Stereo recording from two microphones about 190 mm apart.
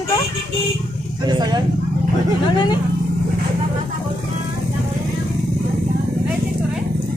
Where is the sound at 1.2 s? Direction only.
20° right (ahead or behind).